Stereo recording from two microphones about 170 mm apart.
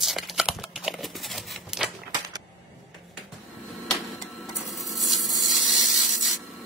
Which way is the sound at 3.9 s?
Centre (ahead or behind).